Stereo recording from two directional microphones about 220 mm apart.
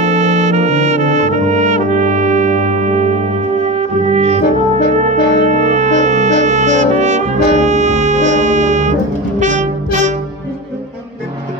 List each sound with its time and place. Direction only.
0.0 s trumpet: 30° right (ahead or behind)
5.0 s music: 35° right (ahead or behind)